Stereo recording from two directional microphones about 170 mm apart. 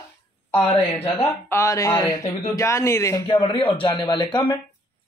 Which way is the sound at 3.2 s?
30° left (ahead or behind).